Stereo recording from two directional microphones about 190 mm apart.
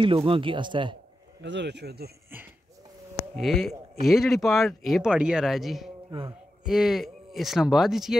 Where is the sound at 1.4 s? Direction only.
65° right (ahead or behind).